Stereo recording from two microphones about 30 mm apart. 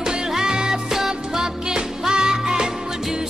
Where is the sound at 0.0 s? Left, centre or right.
Right.